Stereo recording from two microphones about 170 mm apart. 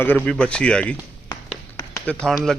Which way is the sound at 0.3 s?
5° left (ahead or behind).